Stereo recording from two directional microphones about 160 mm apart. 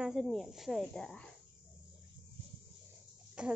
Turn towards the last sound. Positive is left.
turn(degrees=-5)  # may be behind; listen again after turning